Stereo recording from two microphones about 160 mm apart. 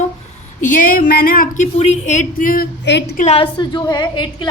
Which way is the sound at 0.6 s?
55° left (ahead or behind).